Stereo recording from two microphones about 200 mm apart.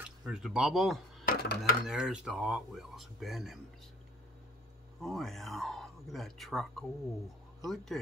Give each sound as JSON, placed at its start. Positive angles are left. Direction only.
{"t": 0.2, "sound": "speech", "side_deg": -5}
{"t": 1.2, "sound": "a sound", "side_deg": 45}
{"t": 1.6, "sound": "speech", "side_deg": -5}
{"t": 5.0, "sound": "speech", "side_deg": 0}